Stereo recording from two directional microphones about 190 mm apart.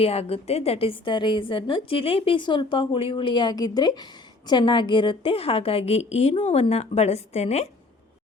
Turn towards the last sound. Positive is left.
turn(degrees=35)  # may be behind; listen again after turning